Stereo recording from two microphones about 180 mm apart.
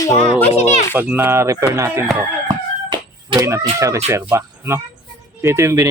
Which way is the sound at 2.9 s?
20° right (ahead or behind).